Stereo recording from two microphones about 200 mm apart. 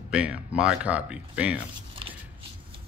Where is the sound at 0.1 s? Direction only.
5° right (ahead or behind).